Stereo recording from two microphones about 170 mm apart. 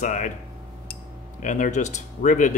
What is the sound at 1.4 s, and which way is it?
A man's voice, 50° left (ahead or behind).